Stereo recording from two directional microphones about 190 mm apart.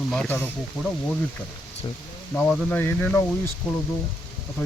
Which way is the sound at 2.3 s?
5° left (ahead or behind).